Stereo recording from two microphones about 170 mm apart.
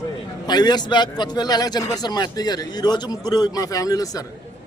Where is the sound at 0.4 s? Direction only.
25° left (ahead or behind).